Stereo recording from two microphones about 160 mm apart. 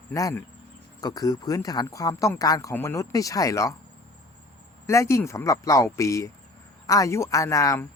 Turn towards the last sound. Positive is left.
turn(degrees=20)  # may be behind; listen again after turning